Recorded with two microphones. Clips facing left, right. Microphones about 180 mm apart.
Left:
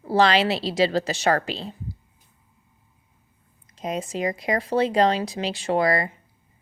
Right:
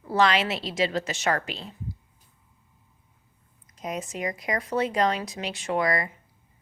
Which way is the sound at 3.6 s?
30° left (ahead or behind).